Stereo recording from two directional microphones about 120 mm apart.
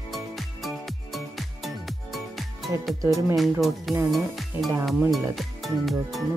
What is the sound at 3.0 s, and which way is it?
Speech, 25° right (ahead or behind).